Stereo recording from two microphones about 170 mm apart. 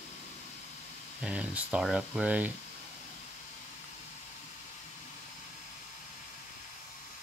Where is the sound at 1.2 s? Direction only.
5° right (ahead or behind).